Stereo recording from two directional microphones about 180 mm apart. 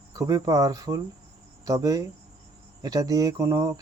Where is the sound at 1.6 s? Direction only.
20° right (ahead or behind).